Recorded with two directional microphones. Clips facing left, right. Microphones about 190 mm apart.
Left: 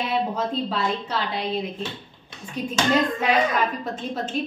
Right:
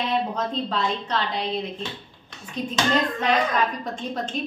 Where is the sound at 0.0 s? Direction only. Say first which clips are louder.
Even; 5° left (ahead or behind).